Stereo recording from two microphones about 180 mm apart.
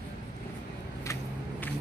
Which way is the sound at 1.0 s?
15° left (ahead or behind).